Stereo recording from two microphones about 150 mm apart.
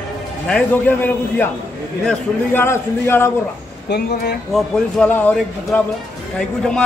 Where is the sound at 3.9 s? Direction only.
90° left.